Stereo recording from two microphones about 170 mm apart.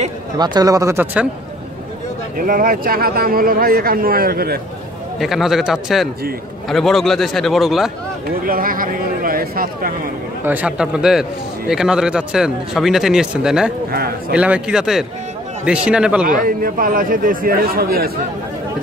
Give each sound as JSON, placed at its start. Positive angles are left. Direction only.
{"t": 0.4, "sound": "speech", "side_deg": -25}
{"t": 2.3, "sound": "speech", "side_deg": -55}
{"t": 5.2, "sound": "a man's voice", "side_deg": 0}
{"t": 8.5, "sound": "speech", "side_deg": -55}
{"t": 10.4, "sound": "a man's voice", "side_deg": -10}
{"t": 16.3, "sound": "speech", "side_deg": -55}